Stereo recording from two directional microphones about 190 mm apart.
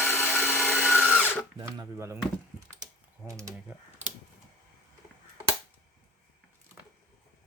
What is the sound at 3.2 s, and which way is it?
Speech, 15° right (ahead or behind).